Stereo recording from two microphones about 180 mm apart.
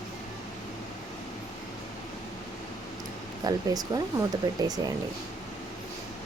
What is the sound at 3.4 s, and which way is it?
Speech, 20° right (ahead or behind).